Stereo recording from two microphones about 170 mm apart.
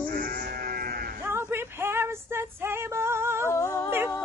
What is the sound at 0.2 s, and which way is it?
Livestock, 60° right (ahead or behind).